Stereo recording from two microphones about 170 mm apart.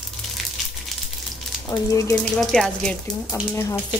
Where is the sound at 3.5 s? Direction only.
15° left (ahead or behind).